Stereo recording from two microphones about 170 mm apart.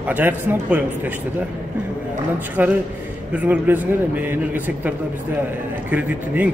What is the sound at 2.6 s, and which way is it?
A man's voice, 10° right (ahead or behind).